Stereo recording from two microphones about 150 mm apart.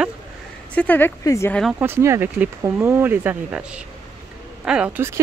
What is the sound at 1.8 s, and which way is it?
Speech, 15° right (ahead or behind).